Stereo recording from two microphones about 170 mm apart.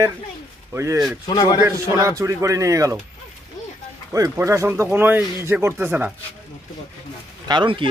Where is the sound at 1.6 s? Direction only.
15° right (ahead or behind).